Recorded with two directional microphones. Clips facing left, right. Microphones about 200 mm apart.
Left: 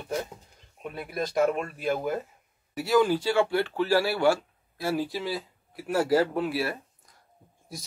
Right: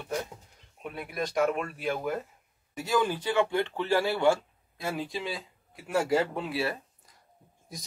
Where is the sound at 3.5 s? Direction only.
20° right (ahead or behind).